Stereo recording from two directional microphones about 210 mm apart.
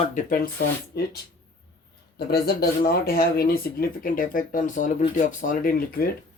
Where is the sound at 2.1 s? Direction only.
50° left (ahead or behind).